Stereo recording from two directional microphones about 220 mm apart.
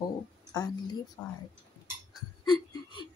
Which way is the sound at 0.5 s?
15° left (ahead or behind).